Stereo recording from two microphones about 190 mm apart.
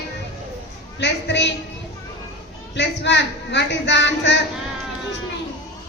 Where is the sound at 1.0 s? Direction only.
65° left (ahead or behind).